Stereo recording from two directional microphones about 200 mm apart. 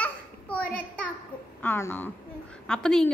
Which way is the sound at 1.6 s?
10° left (ahead or behind).